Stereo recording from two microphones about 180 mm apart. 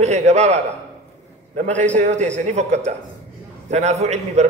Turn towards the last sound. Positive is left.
turn(degrees=-40)  # may be behind; listen again after turning